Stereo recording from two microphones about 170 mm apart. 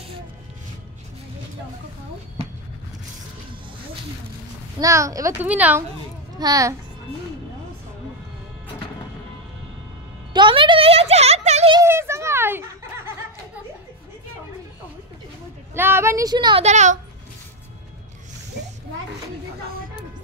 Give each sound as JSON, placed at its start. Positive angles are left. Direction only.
{"t": 4.7, "sound": "a child's voice", "side_deg": -20}
{"t": 6.3, "sound": "a child's voice", "side_deg": -20}
{"t": 10.3, "sound": "a child's voice", "side_deg": -30}
{"t": 11.7, "sound": "a child's voice", "side_deg": -15}
{"t": 15.7, "sound": "a child's voice", "side_deg": -15}
{"t": 16.6, "sound": "speech", "side_deg": -45}